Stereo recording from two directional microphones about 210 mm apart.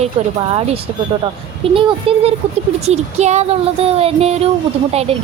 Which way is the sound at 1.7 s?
25° right (ahead or behind).